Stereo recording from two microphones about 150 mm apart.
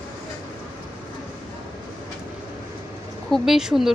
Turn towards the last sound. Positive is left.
turn(degrees=-5)  # may be behind; listen again after turning